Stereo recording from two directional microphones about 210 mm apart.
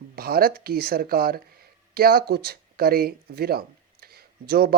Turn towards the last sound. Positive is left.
turn(degrees=-45)  # may be behind; listen again after turning